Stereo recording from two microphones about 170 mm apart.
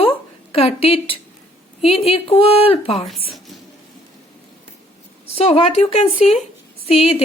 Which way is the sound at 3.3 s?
Centre (ahead or behind).